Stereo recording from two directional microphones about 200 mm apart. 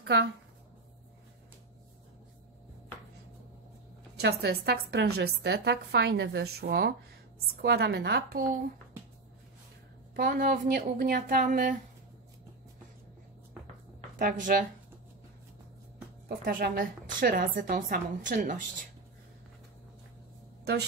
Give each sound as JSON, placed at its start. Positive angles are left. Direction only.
{"t": 0.0, "sound": "a woman's voice", "side_deg": -60}
{"t": 4.2, "sound": "a woman's voice", "side_deg": -55}
{"t": 10.1, "sound": "a woman's voice", "side_deg": -45}
{"t": 14.4, "sound": "speech", "side_deg": -40}
{"t": 16.3, "sound": "a woman's voice", "side_deg": -45}